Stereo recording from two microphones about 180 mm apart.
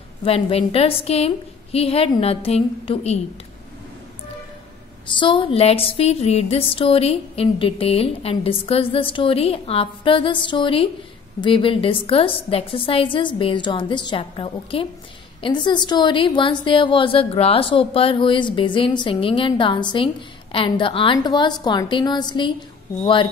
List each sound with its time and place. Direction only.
0.2 s a woman's voice: 30° left (ahead or behind)
5.2 s a woman's voice: 25° left (ahead or behind)